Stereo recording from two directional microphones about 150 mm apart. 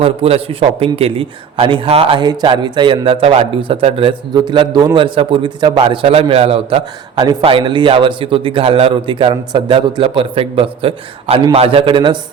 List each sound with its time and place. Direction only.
0.0 s a man's voice: 40° right (ahead or behind)